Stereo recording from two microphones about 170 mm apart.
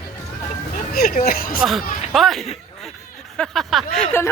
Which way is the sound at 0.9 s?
60° left (ahead or behind).